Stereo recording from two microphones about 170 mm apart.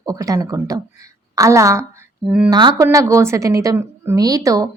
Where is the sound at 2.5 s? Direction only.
25° right (ahead or behind).